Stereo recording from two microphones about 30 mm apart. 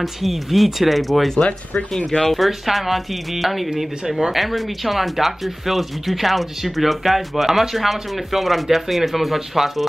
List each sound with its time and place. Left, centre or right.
0.0 s speech: centre